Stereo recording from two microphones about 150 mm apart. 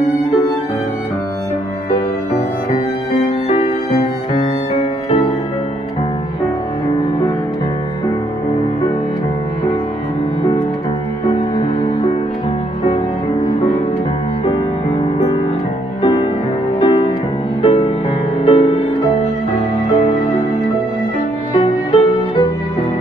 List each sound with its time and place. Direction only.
3.4 s music: 45° left (ahead or behind)
16.8 s music: 35° left (ahead or behind)
21.5 s music: 35° left (ahead or behind)